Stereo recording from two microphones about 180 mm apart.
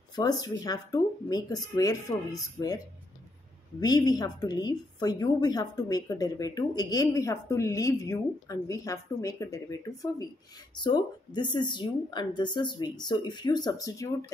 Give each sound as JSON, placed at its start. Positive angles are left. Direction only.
{"t": 0.1, "sound": "a woman's voice", "side_deg": 20}
{"t": 3.8, "sound": "a woman's voice", "side_deg": 20}